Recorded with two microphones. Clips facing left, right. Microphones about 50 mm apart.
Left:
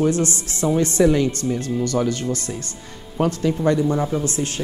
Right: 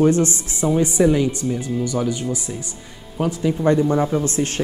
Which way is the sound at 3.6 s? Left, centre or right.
Right.